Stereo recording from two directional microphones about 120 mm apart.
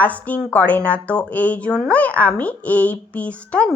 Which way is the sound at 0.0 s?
10° left (ahead or behind).